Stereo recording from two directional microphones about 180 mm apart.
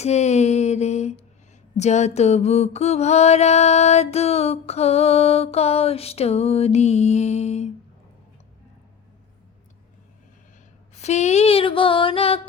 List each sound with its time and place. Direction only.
0.0 s mantra: 40° left (ahead or behind)
10.9 s mantra: 40° left (ahead or behind)